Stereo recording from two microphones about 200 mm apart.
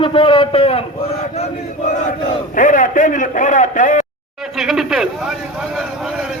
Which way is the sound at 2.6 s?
40° left (ahead or behind).